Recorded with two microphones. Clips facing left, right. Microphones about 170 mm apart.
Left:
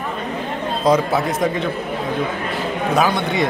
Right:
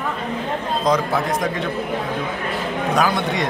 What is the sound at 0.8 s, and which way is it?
Speech, 5° left (ahead or behind).